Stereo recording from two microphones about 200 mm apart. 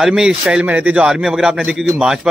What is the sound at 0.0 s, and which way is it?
A man's voice, 5° right (ahead or behind).